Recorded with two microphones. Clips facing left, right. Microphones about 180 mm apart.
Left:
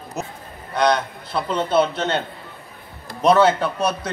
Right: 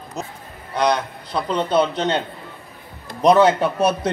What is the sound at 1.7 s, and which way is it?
Speech, 5° left (ahead or behind).